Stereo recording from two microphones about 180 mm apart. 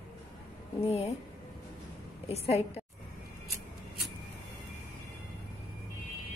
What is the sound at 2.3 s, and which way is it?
Speech, 35° left (ahead or behind).